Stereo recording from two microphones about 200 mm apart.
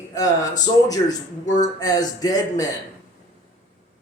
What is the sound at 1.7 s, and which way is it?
Speech, 20° left (ahead or behind).